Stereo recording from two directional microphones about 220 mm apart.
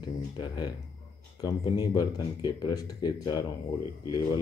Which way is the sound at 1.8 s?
20° left (ahead or behind).